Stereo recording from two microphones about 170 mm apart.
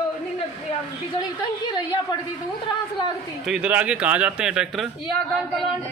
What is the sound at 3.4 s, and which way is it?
Speech, 5° right (ahead or behind).